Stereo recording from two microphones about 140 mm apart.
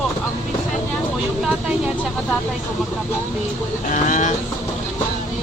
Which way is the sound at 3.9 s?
60° left (ahead or behind).